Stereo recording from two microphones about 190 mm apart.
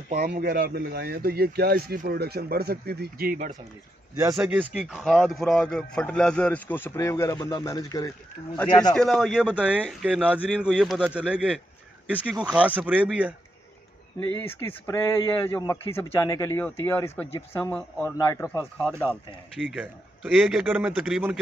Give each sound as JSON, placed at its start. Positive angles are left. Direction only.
{"t": 0.2, "sound": "speech", "side_deg": -55}
{"t": 4.4, "sound": "speech", "side_deg": -5}
{"t": 8.9, "sound": "speech", "side_deg": 0}
{"t": 14.4, "sound": "a man's voice", "side_deg": 10}
{"t": 18.1, "sound": "a man's voice", "side_deg": 20}
{"t": 18.8, "sound": "speech", "side_deg": 5}